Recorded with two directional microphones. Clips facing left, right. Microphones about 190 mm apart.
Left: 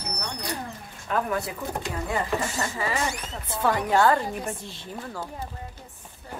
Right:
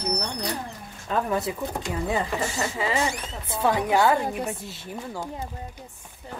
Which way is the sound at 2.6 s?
20° right (ahead or behind).